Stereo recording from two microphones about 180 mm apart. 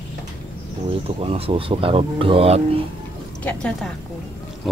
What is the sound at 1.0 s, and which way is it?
Speech, 35° right (ahead or behind).